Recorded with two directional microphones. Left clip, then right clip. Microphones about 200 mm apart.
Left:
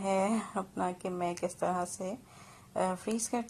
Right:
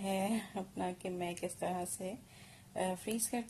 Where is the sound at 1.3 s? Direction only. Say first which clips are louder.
Left 6 dB; 45° left (ahead or behind).